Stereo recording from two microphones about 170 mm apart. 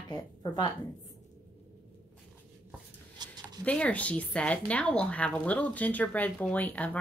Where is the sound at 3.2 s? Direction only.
25° right (ahead or behind).